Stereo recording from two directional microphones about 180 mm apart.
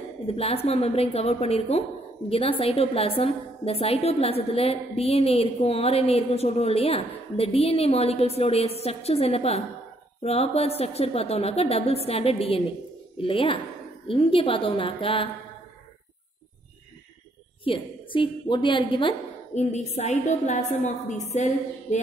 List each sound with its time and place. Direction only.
0.3 s a woman's voice: 35° left (ahead or behind)
17.6 s a woman's voice: 30° left (ahead or behind)
19.5 s a woman's voice: 40° left (ahead or behind)